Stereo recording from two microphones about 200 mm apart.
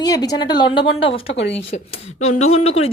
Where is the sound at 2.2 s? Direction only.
90° left.